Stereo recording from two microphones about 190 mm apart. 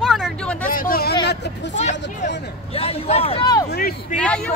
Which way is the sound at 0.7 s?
50° left (ahead or behind).